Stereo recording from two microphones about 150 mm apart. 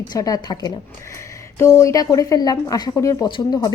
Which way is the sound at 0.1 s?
25° left (ahead or behind).